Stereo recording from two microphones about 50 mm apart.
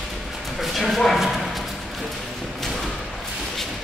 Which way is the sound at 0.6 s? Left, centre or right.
Centre.